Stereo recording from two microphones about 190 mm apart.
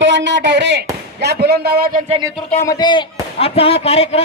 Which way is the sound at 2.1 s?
20° right (ahead or behind).